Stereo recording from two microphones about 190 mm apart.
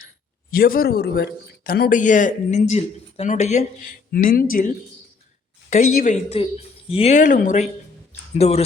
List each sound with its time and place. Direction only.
0.5 s speech: 50° left (ahead or behind)
5.7 s speech: 45° left (ahead or behind)